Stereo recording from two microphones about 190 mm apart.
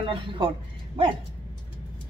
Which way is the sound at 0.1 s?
25° right (ahead or behind).